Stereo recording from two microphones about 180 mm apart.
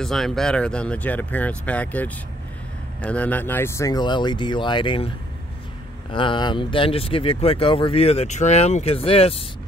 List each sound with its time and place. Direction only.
0.0 s speech: centre (ahead or behind); by 5.1 s 30° left (ahead or behind)
6.1 s speech: 25° left (ahead or behind)